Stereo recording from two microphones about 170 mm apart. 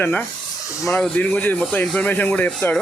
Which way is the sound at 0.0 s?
5° left (ahead or behind).